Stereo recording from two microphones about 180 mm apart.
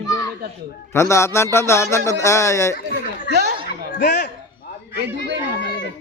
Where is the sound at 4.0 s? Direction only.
65° left (ahead or behind).